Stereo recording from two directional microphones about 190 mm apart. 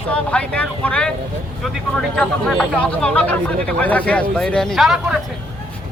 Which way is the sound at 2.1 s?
Centre (ahead or behind).